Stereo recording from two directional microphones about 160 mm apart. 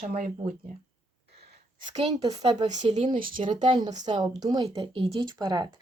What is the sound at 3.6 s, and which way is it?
Speech, 30° right (ahead or behind).